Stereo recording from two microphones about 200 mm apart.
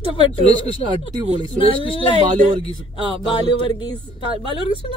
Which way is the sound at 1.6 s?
25° left (ahead or behind).